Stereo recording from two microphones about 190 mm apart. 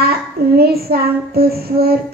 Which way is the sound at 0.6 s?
55° right (ahead or behind).